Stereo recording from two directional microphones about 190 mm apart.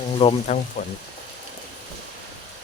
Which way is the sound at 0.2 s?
30° left (ahead or behind).